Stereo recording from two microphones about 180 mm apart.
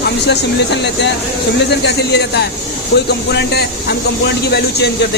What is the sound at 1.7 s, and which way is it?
Speech, 65° left (ahead or behind).